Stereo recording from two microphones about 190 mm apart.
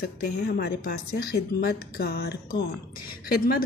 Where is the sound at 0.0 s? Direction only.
55° left (ahead or behind).